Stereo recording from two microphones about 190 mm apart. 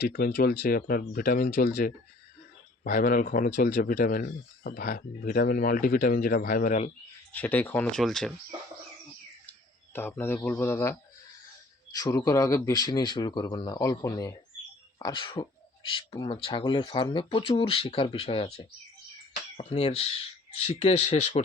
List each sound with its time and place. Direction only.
0.0 s speech: 55° left (ahead or behind)
7.3 s speech: 10° left (ahead or behind)
9.5 s speech: 10° left (ahead or behind); by 21.4 s 35° left (ahead or behind)